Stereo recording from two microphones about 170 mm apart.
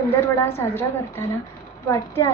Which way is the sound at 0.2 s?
15° left (ahead or behind).